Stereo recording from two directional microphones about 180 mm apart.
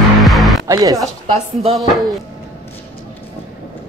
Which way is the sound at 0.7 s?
20° right (ahead or behind).